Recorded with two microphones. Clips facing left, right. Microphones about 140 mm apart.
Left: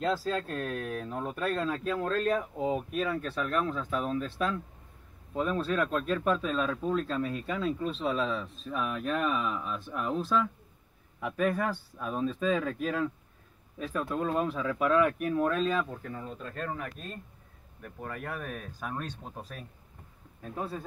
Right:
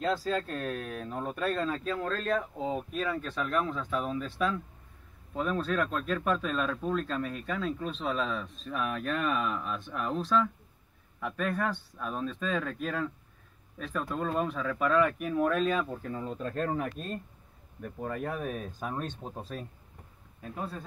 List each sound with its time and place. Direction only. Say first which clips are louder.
0.0 s speech: even; centre (ahead or behind); by 16.3 s 15° right (ahead or behind)
16.5 s speech: right 5 dB; 30° right (ahead or behind)
17.8 s speech: right 4 dB; 20° right (ahead or behind)